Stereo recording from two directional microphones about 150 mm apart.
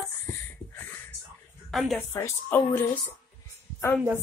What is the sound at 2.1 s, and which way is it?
Speech, 15° left (ahead or behind).